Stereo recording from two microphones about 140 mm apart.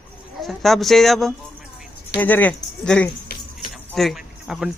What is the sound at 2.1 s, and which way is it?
A man's voice, 10° left (ahead or behind).